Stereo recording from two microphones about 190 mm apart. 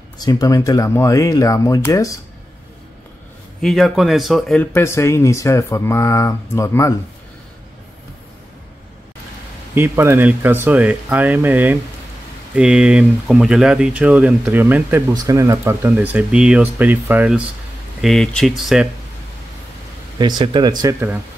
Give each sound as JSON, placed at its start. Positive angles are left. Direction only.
{"t": 0.2, "sound": "speech", "side_deg": 20}
{"t": 3.6, "sound": "speech", "side_deg": 0}
{"t": 9.8, "sound": "speech", "side_deg": -15}
{"t": 20.2, "sound": "speech", "side_deg": -25}